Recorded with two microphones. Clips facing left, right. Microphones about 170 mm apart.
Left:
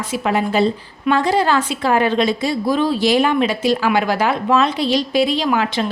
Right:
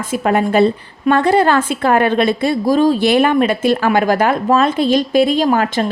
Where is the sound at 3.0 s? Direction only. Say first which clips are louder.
Right 3 dB; 60° right (ahead or behind).